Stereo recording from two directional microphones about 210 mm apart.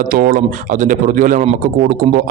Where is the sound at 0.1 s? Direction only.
40° right (ahead or behind).